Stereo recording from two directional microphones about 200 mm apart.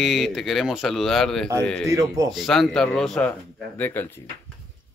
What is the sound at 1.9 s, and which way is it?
Speech, 15° right (ahead or behind).